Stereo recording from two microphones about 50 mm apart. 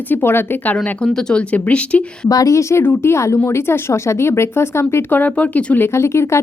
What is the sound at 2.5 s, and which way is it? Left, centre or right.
Speech, left.